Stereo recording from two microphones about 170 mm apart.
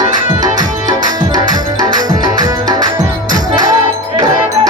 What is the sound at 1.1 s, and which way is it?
Tabla, 25° right (ahead or behind).